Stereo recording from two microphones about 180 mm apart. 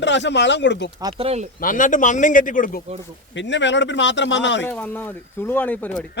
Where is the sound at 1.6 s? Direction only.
50° left (ahead or behind).